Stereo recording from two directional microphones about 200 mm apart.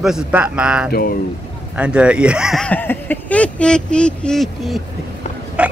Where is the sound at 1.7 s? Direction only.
5° right (ahead or behind).